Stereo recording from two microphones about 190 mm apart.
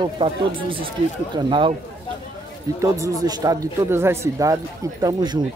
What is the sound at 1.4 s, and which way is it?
Speech, 25° right (ahead or behind).